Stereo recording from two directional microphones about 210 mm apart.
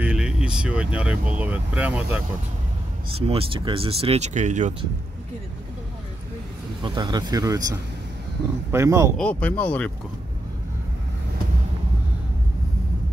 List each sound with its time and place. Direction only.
0.0 s speech: 5° right (ahead or behind)
3.2 s speech: 30° right (ahead or behind)
6.8 s speech: 20° right (ahead or behind)
9.1 s speech: 5° left (ahead or behind)